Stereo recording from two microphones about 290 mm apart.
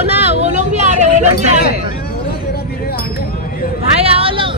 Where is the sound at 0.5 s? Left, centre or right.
Right.